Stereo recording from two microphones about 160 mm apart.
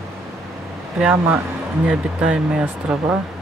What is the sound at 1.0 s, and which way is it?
Speech, 5° right (ahead or behind).